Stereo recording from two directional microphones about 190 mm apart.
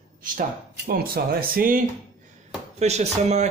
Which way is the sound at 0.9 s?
50° right (ahead or behind).